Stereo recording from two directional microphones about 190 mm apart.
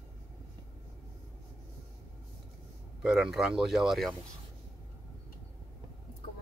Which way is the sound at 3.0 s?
5° right (ahead or behind).